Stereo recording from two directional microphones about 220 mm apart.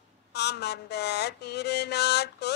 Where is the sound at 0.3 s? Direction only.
50° left (ahead or behind).